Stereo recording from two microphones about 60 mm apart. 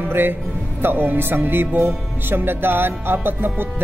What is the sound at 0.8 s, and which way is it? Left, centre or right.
Music, right.